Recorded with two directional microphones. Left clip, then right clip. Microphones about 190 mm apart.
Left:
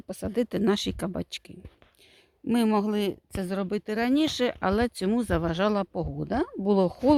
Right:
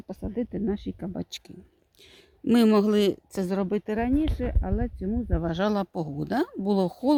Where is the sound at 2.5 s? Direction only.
25° left (ahead or behind).